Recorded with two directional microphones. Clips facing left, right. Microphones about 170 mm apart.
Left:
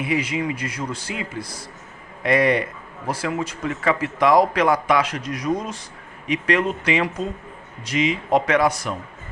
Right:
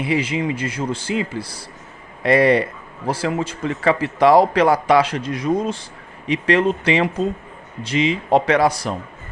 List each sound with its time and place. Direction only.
0.0 s speech: 30° right (ahead or behind)